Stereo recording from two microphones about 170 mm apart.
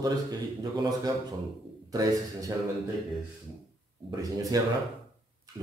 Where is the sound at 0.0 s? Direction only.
20° right (ahead or behind).